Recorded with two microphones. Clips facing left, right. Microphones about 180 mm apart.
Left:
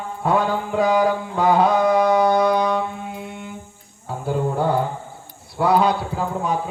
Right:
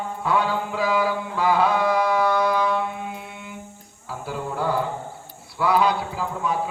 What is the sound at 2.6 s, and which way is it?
Mantra, 40° left (ahead or behind).